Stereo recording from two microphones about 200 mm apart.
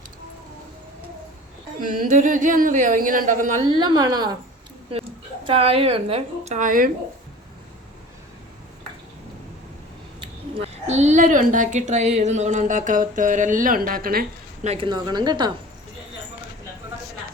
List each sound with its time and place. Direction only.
2.0 s a woman's voice: 40° right (ahead or behind)
3.7 s a woman's voice: 20° right (ahead or behind); by 6.9 s 45° right (ahead or behind)
10.2 s a woman's voice: 30° right (ahead or behind); by 14.7 s 45° right (ahead or behind)
14.7 s a woman's voice: 25° right (ahead or behind)